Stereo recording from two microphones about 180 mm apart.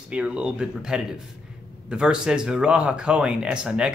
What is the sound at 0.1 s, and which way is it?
Speech, 5° right (ahead or behind).